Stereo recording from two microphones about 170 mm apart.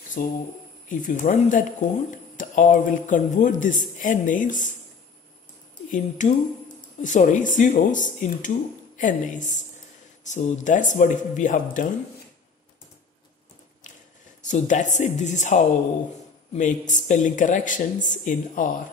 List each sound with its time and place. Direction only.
0.2 s speech: 55° left (ahead or behind)
5.9 s speech: 45° left (ahead or behind)
14.4 s speech: 45° left (ahead or behind)